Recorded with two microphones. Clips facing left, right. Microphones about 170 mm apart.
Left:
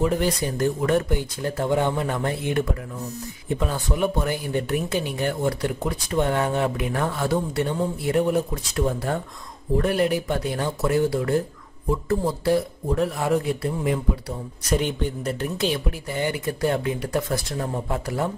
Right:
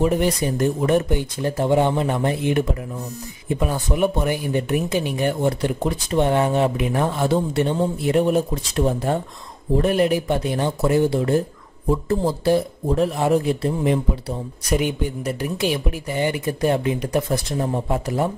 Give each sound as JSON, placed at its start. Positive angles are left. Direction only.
{"t": 0.0, "sound": "speech", "side_deg": -20}
{"t": 14.7, "sound": "speech", "side_deg": -10}